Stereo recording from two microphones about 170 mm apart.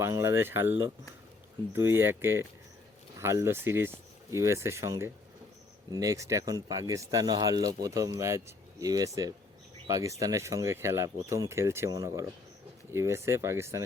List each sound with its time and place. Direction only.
0.0 s speech: 15° right (ahead or behind)